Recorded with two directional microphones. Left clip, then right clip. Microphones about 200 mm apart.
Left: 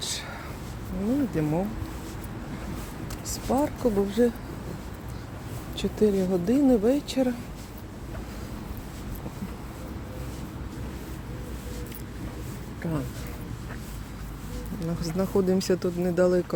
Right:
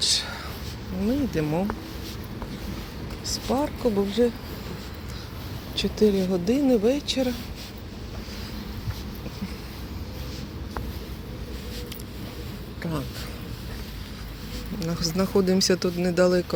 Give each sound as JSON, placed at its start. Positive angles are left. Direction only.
{"t": 0.0, "sound": "whispering", "side_deg": 5}
{"t": 1.4, "sound": "speech", "side_deg": 0}
{"t": 3.5, "sound": "speech", "side_deg": 20}
{"t": 5.7, "sound": "speech", "side_deg": 15}
{"t": 12.8, "sound": "speech", "side_deg": 10}
{"t": 14.8, "sound": "a sound", "side_deg": 5}
{"t": 15.4, "sound": "speech", "side_deg": 10}